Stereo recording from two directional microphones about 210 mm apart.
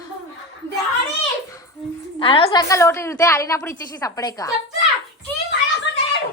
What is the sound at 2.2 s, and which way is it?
A woman's voice, 25° left (ahead or behind).